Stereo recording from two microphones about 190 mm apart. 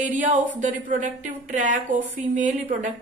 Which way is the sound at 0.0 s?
40° right (ahead or behind).